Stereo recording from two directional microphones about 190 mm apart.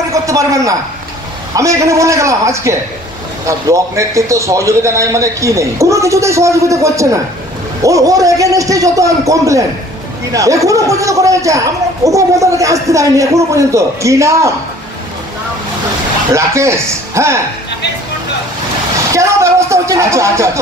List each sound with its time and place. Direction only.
0.1 s a sound: 15° right (ahead or behind)
1.5 s speech: 15° right (ahead or behind)
16.3 s speech: 15° right (ahead or behind)
19.1 s speech: 15° right (ahead or behind)